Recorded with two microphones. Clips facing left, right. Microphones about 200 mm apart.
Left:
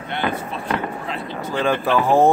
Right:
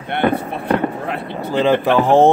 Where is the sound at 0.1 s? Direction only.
60° right (ahead or behind).